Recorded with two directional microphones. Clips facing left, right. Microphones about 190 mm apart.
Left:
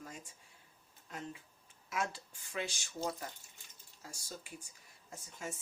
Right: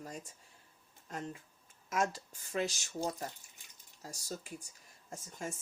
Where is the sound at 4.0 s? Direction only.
40° right (ahead or behind).